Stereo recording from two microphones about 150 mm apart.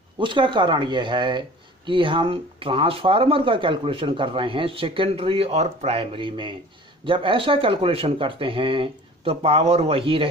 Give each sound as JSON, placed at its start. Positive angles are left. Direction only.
{"t": 0.2, "sound": "speech", "side_deg": -30}